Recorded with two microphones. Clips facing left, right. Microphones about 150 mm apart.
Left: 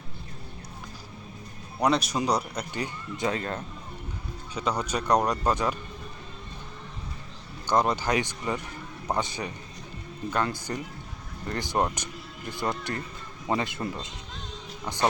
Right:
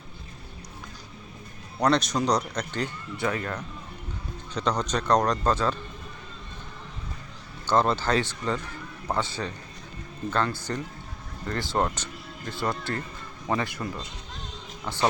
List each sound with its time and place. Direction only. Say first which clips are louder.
1.8 s speech: right 1 dB; 10° left (ahead or behind); by 3.6 s 25° left (ahead or behind)
4.5 s speech: right 2 dB; 10° left (ahead or behind)
7.7 s speech: right 1 dB; 15° left (ahead or behind)